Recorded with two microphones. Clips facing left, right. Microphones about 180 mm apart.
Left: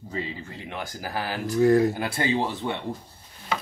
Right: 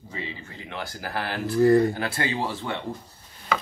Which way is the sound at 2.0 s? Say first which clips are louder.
Left 2 dB; 15° left (ahead or behind).